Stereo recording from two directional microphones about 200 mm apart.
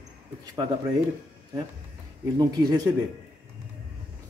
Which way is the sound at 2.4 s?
20° right (ahead or behind).